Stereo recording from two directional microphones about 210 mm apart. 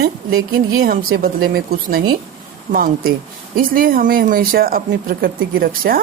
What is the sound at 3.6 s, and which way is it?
Speech, 45° right (ahead or behind).